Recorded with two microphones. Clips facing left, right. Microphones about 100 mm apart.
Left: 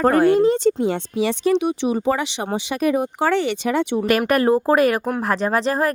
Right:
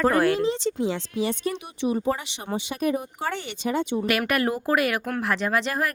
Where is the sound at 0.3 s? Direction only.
50° left (ahead or behind); by 4.0 s 65° left (ahead or behind).